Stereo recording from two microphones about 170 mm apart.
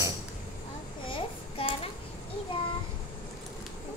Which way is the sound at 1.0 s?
30° left (ahead or behind).